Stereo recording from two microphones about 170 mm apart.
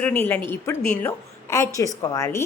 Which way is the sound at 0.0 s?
10° left (ahead or behind).